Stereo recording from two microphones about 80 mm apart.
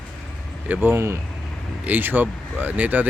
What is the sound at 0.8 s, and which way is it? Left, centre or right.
Speech, right.